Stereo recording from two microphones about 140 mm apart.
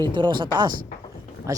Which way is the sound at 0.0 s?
35° right (ahead or behind).